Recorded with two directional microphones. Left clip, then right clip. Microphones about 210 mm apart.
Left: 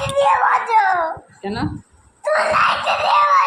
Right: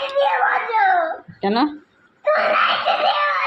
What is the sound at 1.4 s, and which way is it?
Speech, 35° right (ahead or behind).